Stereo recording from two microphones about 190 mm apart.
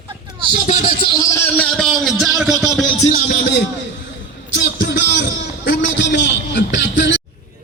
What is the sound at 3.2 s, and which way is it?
Speech, 55° left (ahead or behind).